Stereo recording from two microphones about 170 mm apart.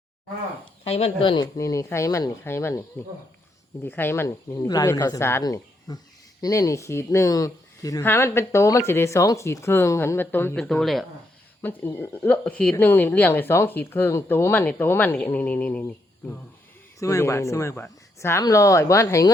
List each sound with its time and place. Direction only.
0.9 s speech: 35° left (ahead or behind)
1.5 s speech: 20° left (ahead or behind)
3.8 s speech: 10° left (ahead or behind)
11.9 s speech: 15° left (ahead or behind)